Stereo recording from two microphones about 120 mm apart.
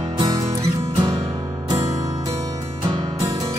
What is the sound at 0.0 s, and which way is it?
Music, 30° right (ahead or behind).